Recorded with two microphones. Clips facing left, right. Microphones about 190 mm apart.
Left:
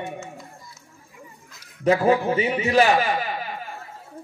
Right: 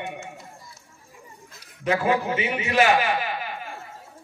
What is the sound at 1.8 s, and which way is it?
Speech, 35° left (ahead or behind).